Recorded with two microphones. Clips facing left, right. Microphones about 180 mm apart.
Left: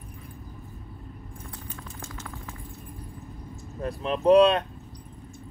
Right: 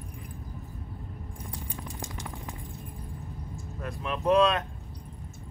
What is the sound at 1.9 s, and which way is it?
Vehicle, 15° right (ahead or behind).